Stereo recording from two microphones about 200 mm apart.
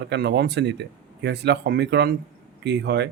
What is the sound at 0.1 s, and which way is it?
Speech, 55° right (ahead or behind).